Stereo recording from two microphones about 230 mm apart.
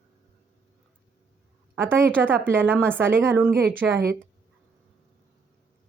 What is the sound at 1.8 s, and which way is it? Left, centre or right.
A woman's voice, centre.